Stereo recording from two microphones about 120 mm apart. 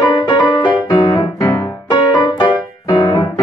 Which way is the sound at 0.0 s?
35° left (ahead or behind).